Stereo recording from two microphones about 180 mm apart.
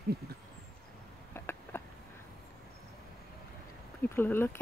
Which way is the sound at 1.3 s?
10° left (ahead or behind).